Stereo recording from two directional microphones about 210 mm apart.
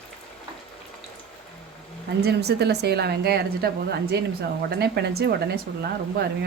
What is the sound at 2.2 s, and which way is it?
A woman's voice, 50° right (ahead or behind).